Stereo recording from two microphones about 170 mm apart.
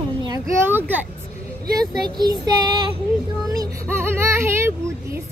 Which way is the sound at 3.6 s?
15° right (ahead or behind).